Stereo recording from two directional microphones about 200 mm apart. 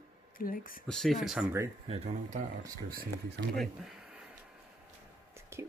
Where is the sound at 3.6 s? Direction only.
Centre (ahead or behind).